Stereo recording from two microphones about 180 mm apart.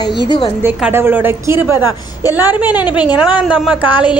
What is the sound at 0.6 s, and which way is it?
A woman's voice, 10° right (ahead or behind).